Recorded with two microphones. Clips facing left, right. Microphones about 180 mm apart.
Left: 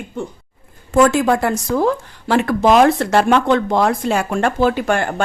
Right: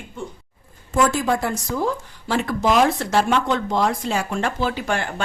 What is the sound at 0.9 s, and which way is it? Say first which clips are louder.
Speech: left 6 dB; 75° left (ahead or behind).